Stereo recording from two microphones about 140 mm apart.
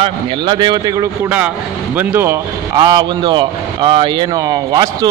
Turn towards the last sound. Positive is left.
turn(degrees=-25)  # may be behind; listen again after turning